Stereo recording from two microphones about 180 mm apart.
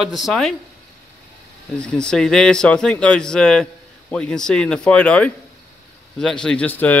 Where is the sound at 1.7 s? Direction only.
5° left (ahead or behind).